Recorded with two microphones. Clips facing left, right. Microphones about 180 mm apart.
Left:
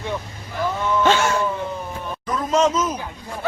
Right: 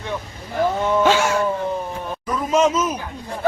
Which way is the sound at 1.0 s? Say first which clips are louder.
Left 1 dB; 5° right (ahead or behind).